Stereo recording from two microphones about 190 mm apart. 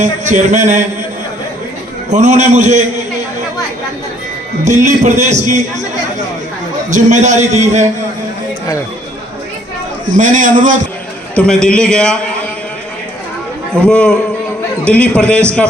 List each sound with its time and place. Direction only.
0.0 s music: 40° right (ahead or behind)
2.0 s music: 40° right (ahead or behind)
4.6 s music: 40° right (ahead or behind)
6.9 s music: 40° right (ahead or behind)
10.2 s a man's voice: 40° right (ahead or behind)
11.3 s a man's voice: 5° left (ahead or behind)
13.8 s a man's voice: 5° left (ahead or behind)